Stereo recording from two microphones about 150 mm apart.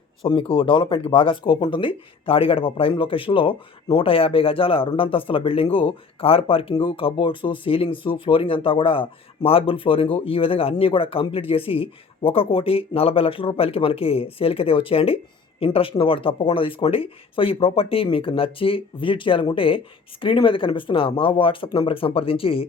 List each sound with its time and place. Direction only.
0.2 s speech: 35° left (ahead or behind)